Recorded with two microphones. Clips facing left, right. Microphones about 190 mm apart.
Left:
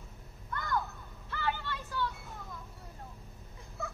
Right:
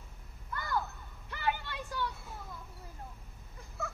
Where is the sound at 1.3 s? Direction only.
15° right (ahead or behind).